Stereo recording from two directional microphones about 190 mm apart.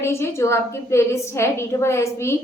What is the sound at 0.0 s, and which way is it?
A woman's voice, 15° left (ahead or behind).